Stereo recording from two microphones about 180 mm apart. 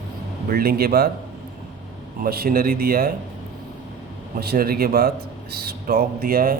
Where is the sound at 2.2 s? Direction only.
55° right (ahead or behind).